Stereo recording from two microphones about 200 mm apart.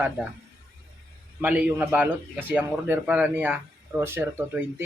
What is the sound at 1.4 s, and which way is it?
Speech, 5° right (ahead or behind).